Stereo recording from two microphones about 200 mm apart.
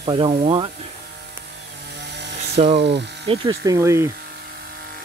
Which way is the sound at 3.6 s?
15° right (ahead or behind).